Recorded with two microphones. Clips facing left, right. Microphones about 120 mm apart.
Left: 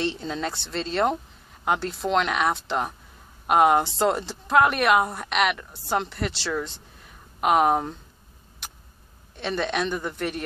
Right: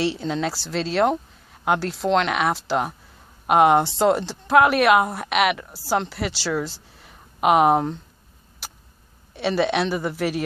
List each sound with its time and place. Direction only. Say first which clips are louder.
0.0 s a woman's voice: right 4 dB; centre (ahead or behind)
9.3 s a woman's voice: right 6 dB; 5° right (ahead or behind)